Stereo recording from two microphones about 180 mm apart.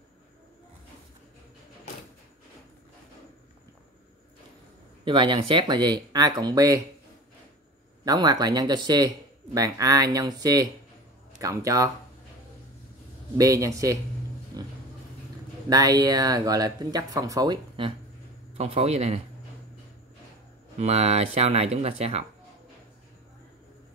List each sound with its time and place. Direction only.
5.0 s a man's voice: 25° right (ahead or behind)
8.0 s a man's voice: 20° right (ahead or behind)
13.4 s speech: 20° right (ahead or behind)
14.6 s pig: 20° right (ahead or behind)
15.7 s a man's voice: 20° right (ahead or behind); by 19.2 s 35° right (ahead or behind)
20.7 s speech: 35° right (ahead or behind)